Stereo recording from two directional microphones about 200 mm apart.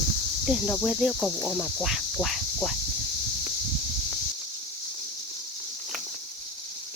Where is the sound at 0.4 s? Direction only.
5° right (ahead or behind).